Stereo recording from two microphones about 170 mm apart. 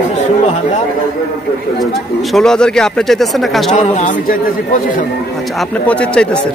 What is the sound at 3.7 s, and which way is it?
A man's voice, 45° left (ahead or behind).